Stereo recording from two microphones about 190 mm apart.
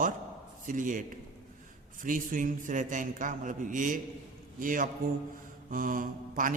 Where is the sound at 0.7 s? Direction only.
45° right (ahead or behind).